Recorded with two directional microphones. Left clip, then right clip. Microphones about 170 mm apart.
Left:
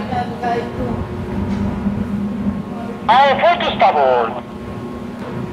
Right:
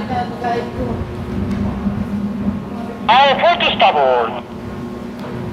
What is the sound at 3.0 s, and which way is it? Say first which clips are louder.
Speech: even; 25° right (ahead or behind).